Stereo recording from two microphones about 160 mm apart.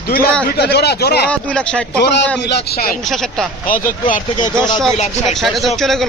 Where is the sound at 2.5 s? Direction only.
75° left (ahead or behind).